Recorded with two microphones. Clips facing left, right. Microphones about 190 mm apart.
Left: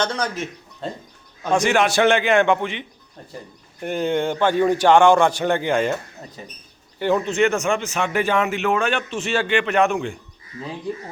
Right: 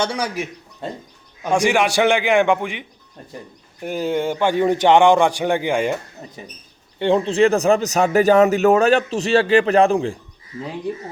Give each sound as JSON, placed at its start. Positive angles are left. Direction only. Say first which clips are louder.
{"t": 0.0, "sound": "a man's voice", "louder": "right 1 dB", "side_deg": -10}
{"t": 7.0, "sound": "a man's voice", "louder": "right 3 dB", "side_deg": -30}